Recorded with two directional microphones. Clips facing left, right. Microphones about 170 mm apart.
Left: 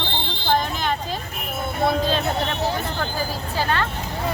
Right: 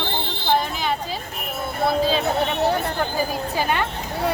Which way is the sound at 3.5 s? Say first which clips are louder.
Even; 15° right (ahead or behind).